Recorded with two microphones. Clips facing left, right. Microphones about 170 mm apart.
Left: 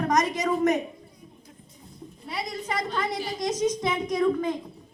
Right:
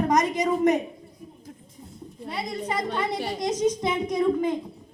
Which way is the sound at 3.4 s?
25° right (ahead or behind).